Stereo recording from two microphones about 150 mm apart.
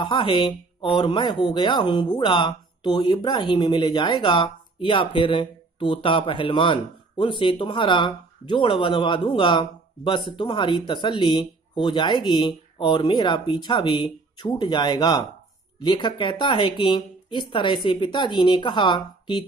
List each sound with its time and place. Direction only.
0.0 s speech: 35° left (ahead or behind)